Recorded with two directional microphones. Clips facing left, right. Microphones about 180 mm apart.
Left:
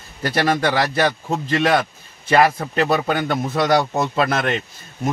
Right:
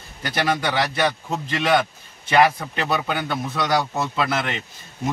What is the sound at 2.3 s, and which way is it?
A man's voice, 45° left (ahead or behind).